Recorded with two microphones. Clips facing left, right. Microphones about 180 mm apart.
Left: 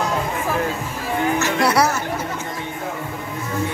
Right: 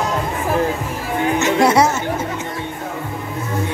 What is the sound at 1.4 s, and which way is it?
Music, 20° right (ahead or behind).